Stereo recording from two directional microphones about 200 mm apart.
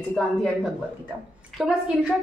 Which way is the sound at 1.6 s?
Centre (ahead or behind).